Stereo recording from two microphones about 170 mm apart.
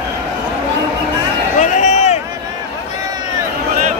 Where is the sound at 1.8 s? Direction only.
40° left (ahead or behind).